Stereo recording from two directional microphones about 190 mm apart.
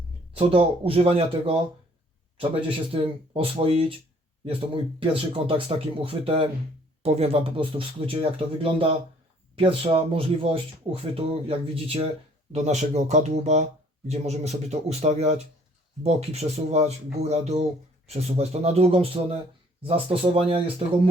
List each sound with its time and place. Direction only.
0.3 s speech: 30° right (ahead or behind)